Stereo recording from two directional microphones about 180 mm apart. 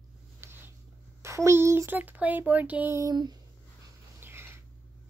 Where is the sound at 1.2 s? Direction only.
15° right (ahead or behind).